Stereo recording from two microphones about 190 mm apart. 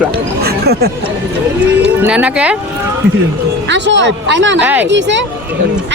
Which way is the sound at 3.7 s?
70° right (ahead or behind).